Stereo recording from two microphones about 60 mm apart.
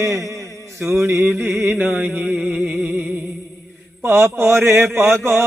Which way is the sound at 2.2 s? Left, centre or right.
Centre.